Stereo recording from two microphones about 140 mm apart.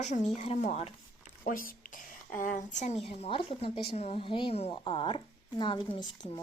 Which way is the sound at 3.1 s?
45° left (ahead or behind).